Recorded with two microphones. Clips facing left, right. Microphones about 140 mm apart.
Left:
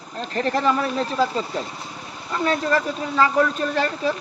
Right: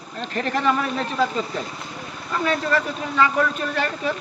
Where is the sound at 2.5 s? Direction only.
35° left (ahead or behind).